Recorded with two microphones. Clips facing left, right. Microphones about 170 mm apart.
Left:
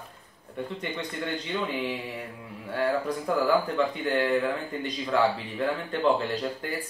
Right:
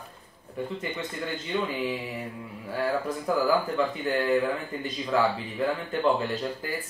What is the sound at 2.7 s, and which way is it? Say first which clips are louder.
Speech: left 1 dB; 5° right (ahead or behind).